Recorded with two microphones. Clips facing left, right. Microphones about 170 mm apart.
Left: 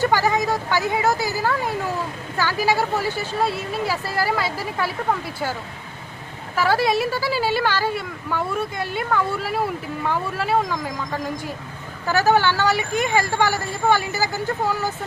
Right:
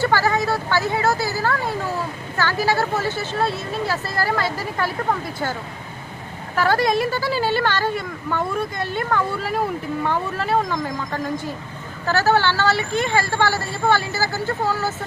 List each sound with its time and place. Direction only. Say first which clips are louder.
0.0 s speech: even; 15° left (ahead or behind)
6.6 s speech: right 1 dB; 5° left (ahead or behind)